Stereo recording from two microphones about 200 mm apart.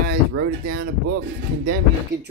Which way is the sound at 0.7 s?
50° right (ahead or behind).